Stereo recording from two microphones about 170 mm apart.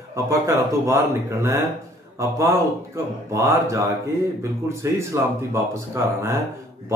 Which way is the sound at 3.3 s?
15° right (ahead or behind).